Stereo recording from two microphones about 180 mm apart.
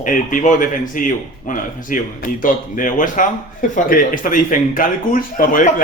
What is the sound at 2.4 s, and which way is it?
Speech, 50° left (ahead or behind).